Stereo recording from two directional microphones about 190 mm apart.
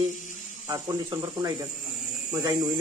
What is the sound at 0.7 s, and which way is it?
Speech, 20° right (ahead or behind).